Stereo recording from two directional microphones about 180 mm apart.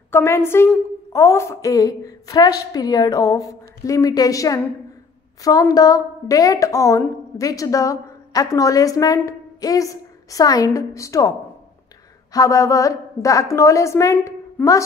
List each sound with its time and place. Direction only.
0.1 s a woman's voice: 15° left (ahead or behind)